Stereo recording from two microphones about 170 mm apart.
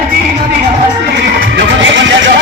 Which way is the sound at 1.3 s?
80° right.